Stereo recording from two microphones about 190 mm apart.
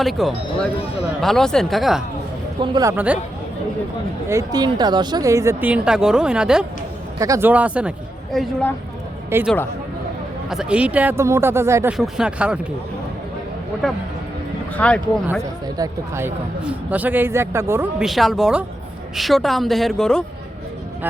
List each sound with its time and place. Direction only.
0.0 s a woman's voice: centre (ahead or behind)
2.6 s speech: 20° right (ahead or behind)
2.9 s speech: 10° right (ahead or behind)
4.3 s speech: 20° right (ahead or behind)
7.2 s speech: 15° right (ahead or behind); by 8.7 s centre (ahead or behind)
9.3 s speech: 15° right (ahead or behind)
10.5 s speech: 5° right (ahead or behind)
11.9 s a woman's voice: centre (ahead or behind)
14.8 s speech: 5° left (ahead or behind)
15.4 s speech: 15° right (ahead or behind)
18.0 s a woman's voice: centre (ahead or behind)